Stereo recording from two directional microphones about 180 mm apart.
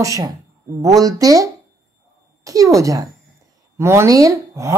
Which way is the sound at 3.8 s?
15° right (ahead or behind).